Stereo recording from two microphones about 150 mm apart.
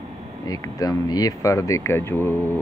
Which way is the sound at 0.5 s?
25° left (ahead or behind).